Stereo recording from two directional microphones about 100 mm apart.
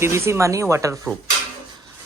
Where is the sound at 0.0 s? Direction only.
30° right (ahead or behind).